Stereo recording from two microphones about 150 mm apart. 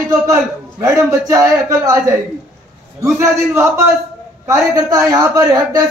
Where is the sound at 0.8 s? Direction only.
20° right (ahead or behind).